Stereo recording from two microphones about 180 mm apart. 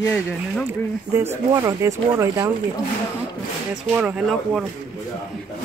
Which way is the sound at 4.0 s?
5° right (ahead or behind).